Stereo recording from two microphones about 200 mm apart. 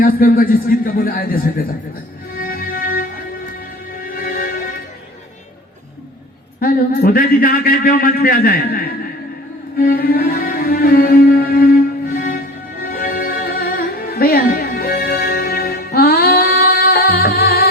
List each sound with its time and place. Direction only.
0.0 s a man's voice: 45° left (ahead or behind)
2.3 s music: 45° left (ahead or behind)
6.6 s a man's voice: 45° left (ahead or behind)
9.7 s music: 50° left (ahead or behind)